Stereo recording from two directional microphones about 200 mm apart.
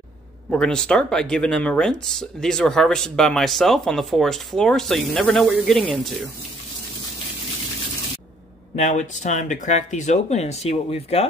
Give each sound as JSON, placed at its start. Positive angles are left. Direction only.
{"t": 0.5, "sound": "speech", "side_deg": 5}
{"t": 8.7, "sound": "speech", "side_deg": 35}